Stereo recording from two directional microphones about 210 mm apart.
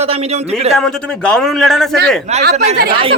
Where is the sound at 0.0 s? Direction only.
30° right (ahead or behind).